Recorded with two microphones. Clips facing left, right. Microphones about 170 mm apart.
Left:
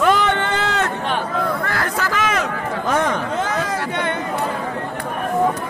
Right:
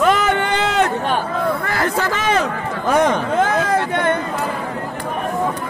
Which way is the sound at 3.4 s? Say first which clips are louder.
Right 5 dB; 55° right (ahead or behind).